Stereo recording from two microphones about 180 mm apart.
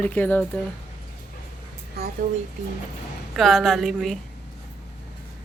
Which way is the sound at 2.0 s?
60° right (ahead or behind).